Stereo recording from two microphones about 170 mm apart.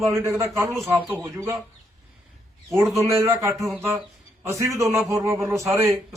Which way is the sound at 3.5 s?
Centre (ahead or behind).